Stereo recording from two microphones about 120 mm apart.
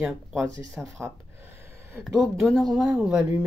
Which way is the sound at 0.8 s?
20° right (ahead or behind).